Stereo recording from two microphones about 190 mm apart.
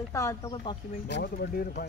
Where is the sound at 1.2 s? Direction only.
55° left (ahead or behind).